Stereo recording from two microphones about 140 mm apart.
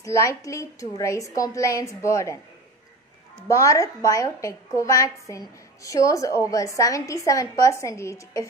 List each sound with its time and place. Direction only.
0.0 s a woman's voice: 20° left (ahead or behind)
3.4 s a woman's voice: 25° left (ahead or behind)